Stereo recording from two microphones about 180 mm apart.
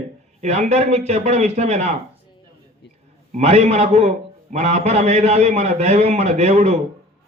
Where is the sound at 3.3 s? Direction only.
35° right (ahead or behind).